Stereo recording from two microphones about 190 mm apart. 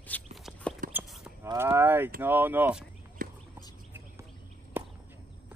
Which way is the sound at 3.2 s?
45° right (ahead or behind).